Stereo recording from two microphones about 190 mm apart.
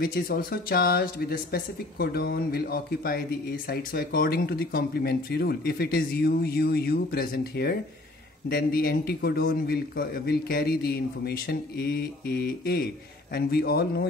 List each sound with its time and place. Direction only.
0.0 s speech: 50° left (ahead or behind)